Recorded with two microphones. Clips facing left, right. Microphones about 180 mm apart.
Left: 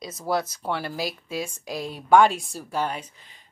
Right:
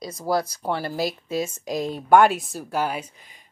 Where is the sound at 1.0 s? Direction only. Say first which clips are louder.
Right 4 dB; 45° right (ahead or behind).